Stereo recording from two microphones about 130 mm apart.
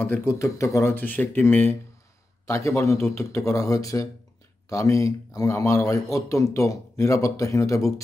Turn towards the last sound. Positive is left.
turn(degrees=25)  # may be behind; listen again after turning